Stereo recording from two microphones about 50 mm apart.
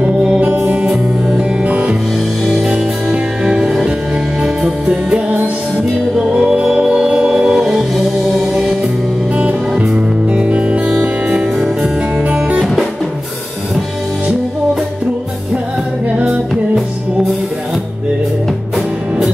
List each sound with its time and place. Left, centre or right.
0.0 s music: right
1.6 s music: right
2.6 s music: centre
9.4 s music: right
12.4 s music: centre